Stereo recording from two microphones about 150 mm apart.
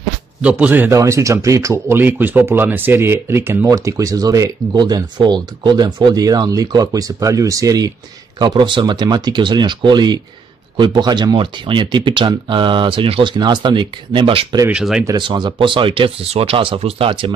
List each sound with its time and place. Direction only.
0.4 s speech: 10° right (ahead or behind); by 14.6 s 35° right (ahead or behind)
14.7 s speech: 5° right (ahead or behind)
15.0 s speech: 30° right (ahead or behind)